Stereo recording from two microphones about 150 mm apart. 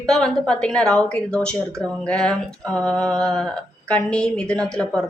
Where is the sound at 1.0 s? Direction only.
5° left (ahead or behind).